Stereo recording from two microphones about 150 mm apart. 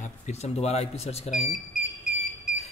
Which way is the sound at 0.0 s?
45° left (ahead or behind).